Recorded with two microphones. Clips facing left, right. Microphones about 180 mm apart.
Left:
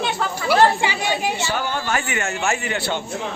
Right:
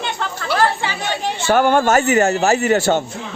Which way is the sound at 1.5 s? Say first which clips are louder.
Right 10 dB; 50° right (ahead or behind).